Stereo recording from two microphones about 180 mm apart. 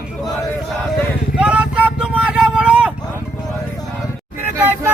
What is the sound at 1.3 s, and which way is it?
Vehicle, 5° right (ahead or behind).